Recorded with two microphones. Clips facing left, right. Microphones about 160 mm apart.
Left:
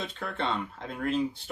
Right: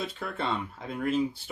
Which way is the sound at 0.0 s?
5° right (ahead or behind).